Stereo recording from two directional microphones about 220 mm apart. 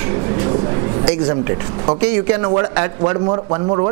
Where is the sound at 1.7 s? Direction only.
25° right (ahead or behind).